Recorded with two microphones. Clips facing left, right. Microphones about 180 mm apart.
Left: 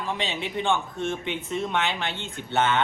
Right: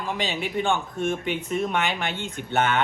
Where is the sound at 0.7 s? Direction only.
15° right (ahead or behind).